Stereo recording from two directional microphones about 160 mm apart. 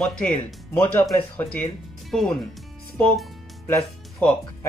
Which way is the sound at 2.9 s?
10° left (ahead or behind).